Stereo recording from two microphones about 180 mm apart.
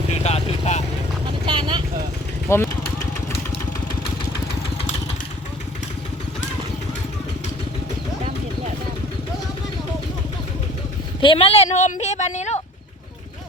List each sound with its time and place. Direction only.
0.2 s vehicle: 35° left (ahead or behind)
1.5 s vehicle: 25° right (ahead or behind)
2.5 s vehicle: 15° left (ahead or behind)
11.2 s a woman's voice: 30° left (ahead or behind)